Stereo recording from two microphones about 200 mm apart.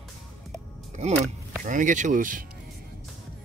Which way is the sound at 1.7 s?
40° right (ahead or behind).